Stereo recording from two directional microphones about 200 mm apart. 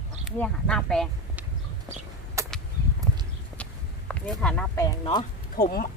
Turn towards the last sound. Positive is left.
turn(degrees=45)  # may be behind; listen again after turning